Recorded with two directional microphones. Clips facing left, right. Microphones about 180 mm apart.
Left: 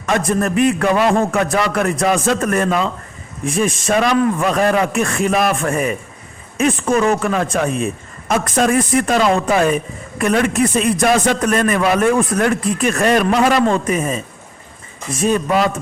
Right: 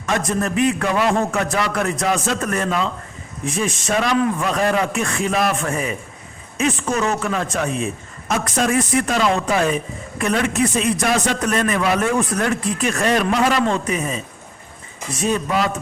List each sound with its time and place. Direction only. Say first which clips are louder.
0.0 s a man's voice: left 4 dB; 60° left (ahead or behind)